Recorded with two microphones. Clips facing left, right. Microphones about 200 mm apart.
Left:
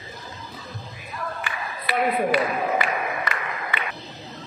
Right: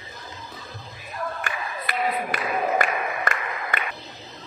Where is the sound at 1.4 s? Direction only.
50° right (ahead or behind).